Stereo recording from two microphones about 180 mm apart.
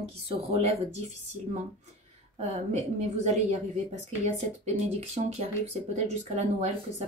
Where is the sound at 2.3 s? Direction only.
35° right (ahead or behind).